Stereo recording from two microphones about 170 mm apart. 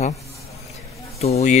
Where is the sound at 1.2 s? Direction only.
40° left (ahead or behind).